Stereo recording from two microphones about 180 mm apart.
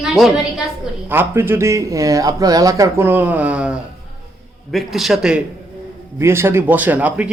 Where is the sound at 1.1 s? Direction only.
10° right (ahead or behind).